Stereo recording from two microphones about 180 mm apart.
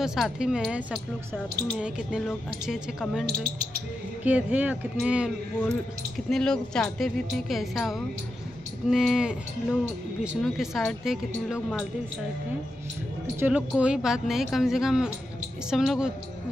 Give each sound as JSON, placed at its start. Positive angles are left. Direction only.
{"t": 0.0, "sound": "speech", "side_deg": -5}
{"t": 13.4, "sound": "speech", "side_deg": -5}